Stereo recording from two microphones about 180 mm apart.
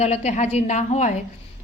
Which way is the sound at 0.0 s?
35° left (ahead or behind).